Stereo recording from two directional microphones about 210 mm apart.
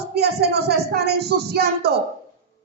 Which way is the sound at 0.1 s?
50° right (ahead or behind).